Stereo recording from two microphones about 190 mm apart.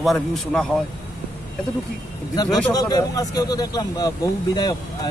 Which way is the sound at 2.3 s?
20° left (ahead or behind).